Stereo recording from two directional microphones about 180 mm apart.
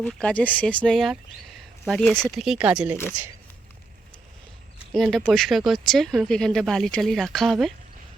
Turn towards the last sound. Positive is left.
turn(degrees=0)  # may be behind; listen again after turning